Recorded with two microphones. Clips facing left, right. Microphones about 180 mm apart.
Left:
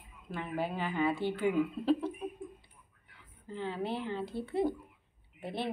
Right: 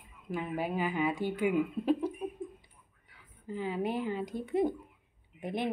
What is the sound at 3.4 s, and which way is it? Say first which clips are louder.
Speech: right 3 dB; 10° right (ahead or behind).